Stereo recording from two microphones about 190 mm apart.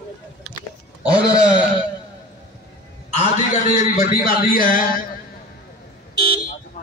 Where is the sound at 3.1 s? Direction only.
35° left (ahead or behind).